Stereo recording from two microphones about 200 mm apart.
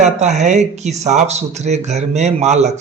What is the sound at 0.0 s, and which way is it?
Speech, 35° right (ahead or behind).